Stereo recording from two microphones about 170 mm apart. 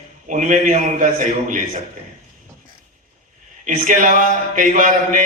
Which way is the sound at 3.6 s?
50° right (ahead or behind).